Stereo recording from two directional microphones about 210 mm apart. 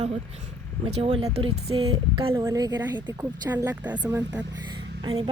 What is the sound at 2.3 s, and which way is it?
Speech, 15° right (ahead or behind).